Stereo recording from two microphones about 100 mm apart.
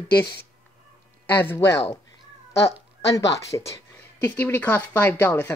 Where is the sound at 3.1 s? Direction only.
30° left (ahead or behind).